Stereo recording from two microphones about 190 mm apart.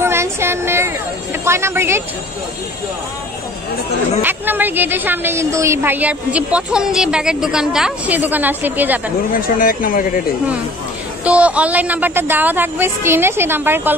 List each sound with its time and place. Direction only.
0.0 s a sound: 15° right (ahead or behind)
1.4 s a woman's voice: 15° right (ahead or behind)
4.2 s a woman's voice: 10° right (ahead or behind)
9.3 s speech: 50° left (ahead or behind)
11.2 s a woman's voice: 5° right (ahead or behind)